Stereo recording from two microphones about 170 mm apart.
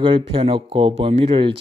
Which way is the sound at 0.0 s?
30° right (ahead or behind).